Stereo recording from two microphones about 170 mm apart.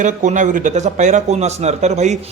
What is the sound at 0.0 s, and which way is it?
A man's voice, 45° right (ahead or behind).